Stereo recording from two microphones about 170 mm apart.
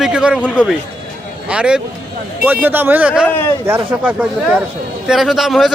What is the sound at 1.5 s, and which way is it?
A man's voice, 5° right (ahead or behind).